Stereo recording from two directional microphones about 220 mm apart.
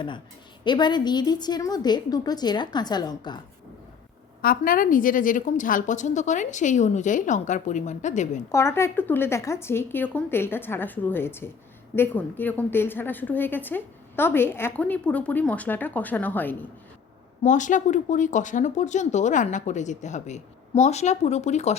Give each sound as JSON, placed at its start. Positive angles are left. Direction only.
{"t": 0.6, "sound": "a woman's voice", "side_deg": 20}
{"t": 4.4, "sound": "speech", "side_deg": 40}
{"t": 8.5, "sound": "a woman's voice", "side_deg": 10}
{"t": 17.4, "sound": "speech", "side_deg": 35}